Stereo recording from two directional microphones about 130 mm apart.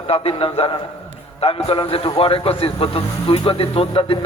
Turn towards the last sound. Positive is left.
turn(degrees=45)  # may be behind; listen again after turning